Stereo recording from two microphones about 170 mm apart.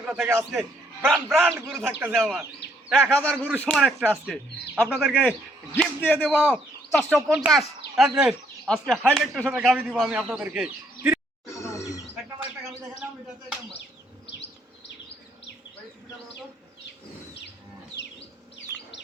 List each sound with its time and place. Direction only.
0.0 s a man's voice: 5° right (ahead or behind)
4.9 s speech: 5° right (ahead or behind)
5.7 s speech: 10° left (ahead or behind)
6.2 s speech: 5° right (ahead or behind)
9.5 s a man's voice: 10° right (ahead or behind)
11.4 s a sound: 15° left (ahead or behind)